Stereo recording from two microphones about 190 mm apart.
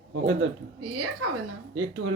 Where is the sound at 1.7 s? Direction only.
90° right.